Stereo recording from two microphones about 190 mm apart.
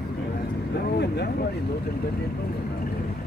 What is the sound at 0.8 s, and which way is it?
Vehicle, 60° left (ahead or behind).